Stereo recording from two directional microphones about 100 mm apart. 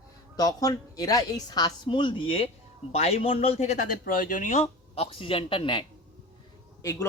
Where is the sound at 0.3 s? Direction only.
40° left (ahead or behind); by 2.5 s 65° left (ahead or behind).